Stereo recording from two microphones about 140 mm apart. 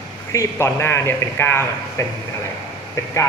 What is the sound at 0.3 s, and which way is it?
A man's voice, 20° left (ahead or behind).